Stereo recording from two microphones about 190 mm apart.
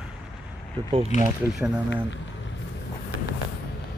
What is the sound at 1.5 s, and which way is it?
Speech, 5° right (ahead or behind).